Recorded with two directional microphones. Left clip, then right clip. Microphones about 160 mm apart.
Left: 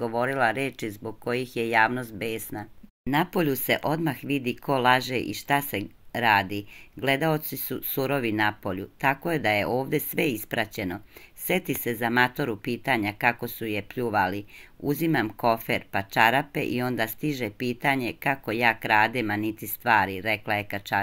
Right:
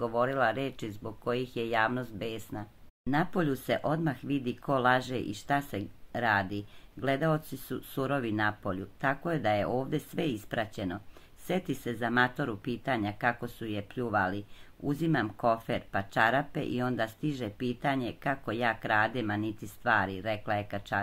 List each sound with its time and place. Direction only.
0.0 s speech: 15° left (ahead or behind)